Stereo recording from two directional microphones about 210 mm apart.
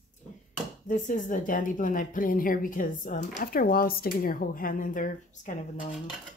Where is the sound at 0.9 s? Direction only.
35° left (ahead or behind).